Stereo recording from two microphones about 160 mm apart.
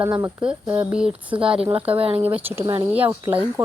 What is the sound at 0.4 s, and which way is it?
Speech, 5° right (ahead or behind).